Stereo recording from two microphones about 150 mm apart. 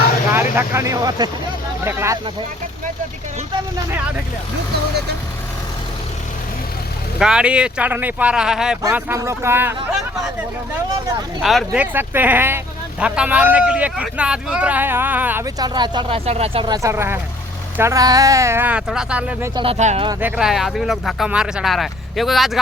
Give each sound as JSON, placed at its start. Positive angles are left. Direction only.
{"t": 0.3, "sound": "speech", "side_deg": -15}
{"t": 7.2, "sound": "speech", "side_deg": -5}
{"t": 11.4, "sound": "speech", "side_deg": -5}
{"t": 15.4, "sound": "speech", "side_deg": -25}
{"t": 16.6, "sound": "speech", "side_deg": -25}
{"t": 19.5, "sound": "speech", "side_deg": -40}
{"t": 20.2, "sound": "speech", "side_deg": -5}